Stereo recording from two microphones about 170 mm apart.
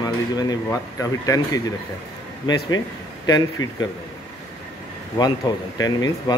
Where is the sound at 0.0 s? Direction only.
20° left (ahead or behind).